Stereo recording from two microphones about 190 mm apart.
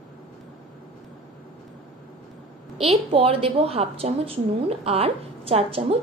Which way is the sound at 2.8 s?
30° right (ahead or behind).